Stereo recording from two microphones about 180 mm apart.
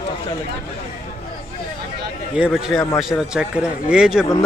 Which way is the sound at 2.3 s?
5° right (ahead or behind).